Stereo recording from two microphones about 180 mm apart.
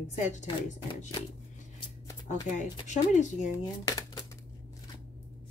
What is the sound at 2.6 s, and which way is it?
Speech, 40° left (ahead or behind).